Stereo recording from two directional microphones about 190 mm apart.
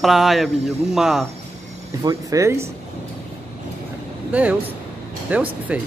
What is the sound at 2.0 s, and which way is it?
Speech, 15° right (ahead or behind).